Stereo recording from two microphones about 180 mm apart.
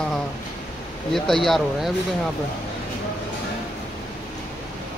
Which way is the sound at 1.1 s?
Centre (ahead or behind).